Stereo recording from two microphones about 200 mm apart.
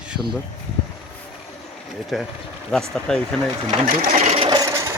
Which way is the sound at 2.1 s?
Centre (ahead or behind).